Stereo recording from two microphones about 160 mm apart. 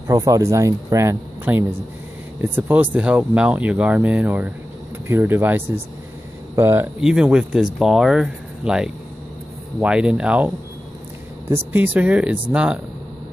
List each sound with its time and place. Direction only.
0.1 s speech: 20° right (ahead or behind)